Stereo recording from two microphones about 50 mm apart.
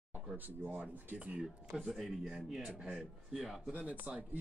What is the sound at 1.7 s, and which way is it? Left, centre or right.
Speech, centre.